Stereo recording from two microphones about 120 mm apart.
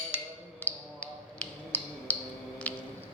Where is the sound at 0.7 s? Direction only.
15° left (ahead or behind).